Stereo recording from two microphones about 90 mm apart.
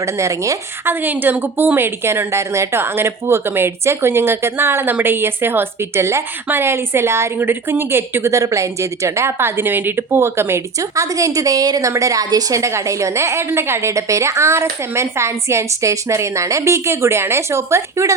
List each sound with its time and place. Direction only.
0.0 s a woman's voice: 35° right (ahead or behind)
0.9 s a woman's voice: 20° right (ahead or behind)